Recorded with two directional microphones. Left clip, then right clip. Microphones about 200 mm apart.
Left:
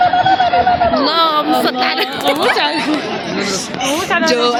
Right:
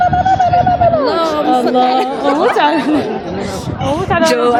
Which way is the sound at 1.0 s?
5° right (ahead or behind).